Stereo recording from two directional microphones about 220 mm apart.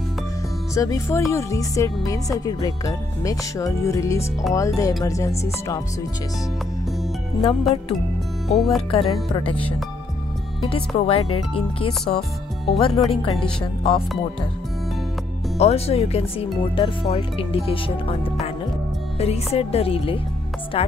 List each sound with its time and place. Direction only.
0.7 s speech: 15° left (ahead or behind)
7.7 s speech: centre (ahead or behind)
8.9 s speech: 25° left (ahead or behind)
10.7 s speech: 25° left (ahead or behind)
11.1 s speech: 90° left
11.5 s speech: 25° left (ahead or behind)
12.2 s speech: centre (ahead or behind)
12.9 s speech: 25° left (ahead or behind)
15.5 s speech: 30° left (ahead or behind)